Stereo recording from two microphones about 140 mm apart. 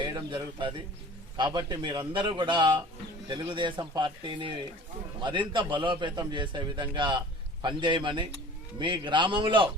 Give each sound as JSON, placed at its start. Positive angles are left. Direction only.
{"t": 0.0, "sound": "a man's voice", "side_deg": -35}